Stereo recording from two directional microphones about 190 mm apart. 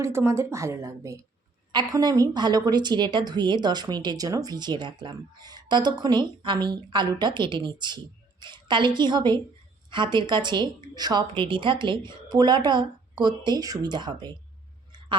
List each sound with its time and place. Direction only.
0.0 s a woman's voice: 15° right (ahead or behind)